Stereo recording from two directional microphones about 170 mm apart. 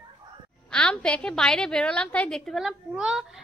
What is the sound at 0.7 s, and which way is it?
A woman's voice, 5° left (ahead or behind).